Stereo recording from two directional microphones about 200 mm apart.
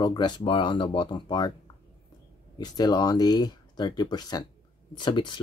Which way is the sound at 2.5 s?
20° left (ahead or behind).